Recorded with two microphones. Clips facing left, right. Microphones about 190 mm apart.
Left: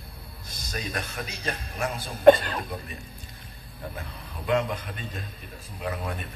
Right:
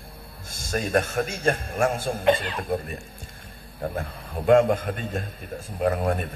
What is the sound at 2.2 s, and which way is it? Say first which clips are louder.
Speech: left 7 dB; 50° left (ahead or behind).